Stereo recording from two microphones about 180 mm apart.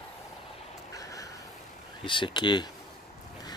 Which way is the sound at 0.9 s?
20° left (ahead or behind).